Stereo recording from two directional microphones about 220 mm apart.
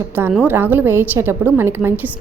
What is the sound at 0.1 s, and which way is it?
A woman's voice, 10° right (ahead or behind).